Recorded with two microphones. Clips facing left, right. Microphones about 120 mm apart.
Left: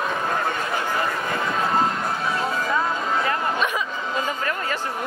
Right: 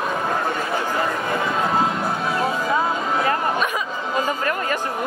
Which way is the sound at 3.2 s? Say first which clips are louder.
Right 2 dB; 35° right (ahead or behind).